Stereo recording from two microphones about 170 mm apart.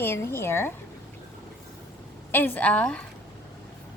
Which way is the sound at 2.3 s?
10° left (ahead or behind).